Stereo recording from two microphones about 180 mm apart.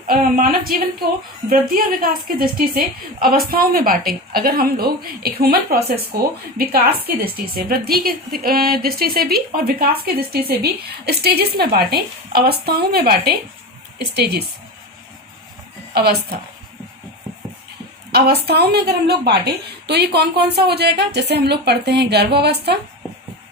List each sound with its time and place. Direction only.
0.1 s a woman's voice: 55° right (ahead or behind)
15.9 s a woman's voice: 65° right (ahead or behind)
18.1 s a woman's voice: 65° right (ahead or behind)